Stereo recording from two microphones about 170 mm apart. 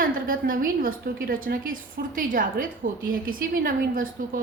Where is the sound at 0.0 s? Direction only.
55° right (ahead or behind).